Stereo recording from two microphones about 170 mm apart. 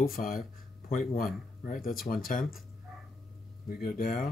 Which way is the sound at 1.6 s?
55° left (ahead or behind).